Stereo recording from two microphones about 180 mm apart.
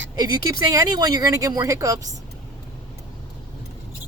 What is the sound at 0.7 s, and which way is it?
Speech, 20° right (ahead or behind).